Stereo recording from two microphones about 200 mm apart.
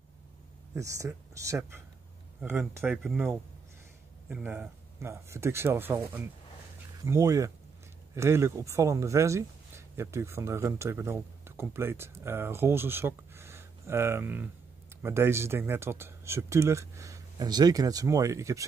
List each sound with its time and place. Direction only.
0.7 s speech: 15° right (ahead or behind)